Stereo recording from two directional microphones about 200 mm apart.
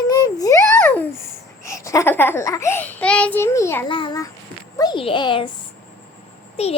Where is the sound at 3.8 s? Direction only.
25° left (ahead or behind).